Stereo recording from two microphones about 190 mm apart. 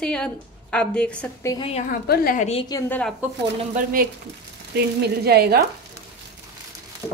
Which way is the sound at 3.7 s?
45° right (ahead or behind).